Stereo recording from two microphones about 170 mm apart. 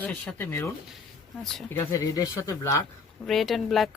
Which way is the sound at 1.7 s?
15° left (ahead or behind).